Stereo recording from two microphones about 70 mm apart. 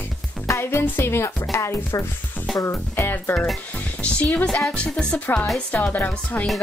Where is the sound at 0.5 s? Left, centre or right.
Left.